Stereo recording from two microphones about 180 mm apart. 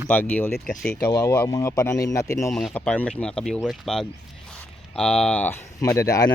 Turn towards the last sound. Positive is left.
turn(degrees=20)  # may be behind; listen again after turning